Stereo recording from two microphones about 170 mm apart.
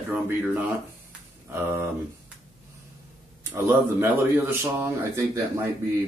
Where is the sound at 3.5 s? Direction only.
15° right (ahead or behind).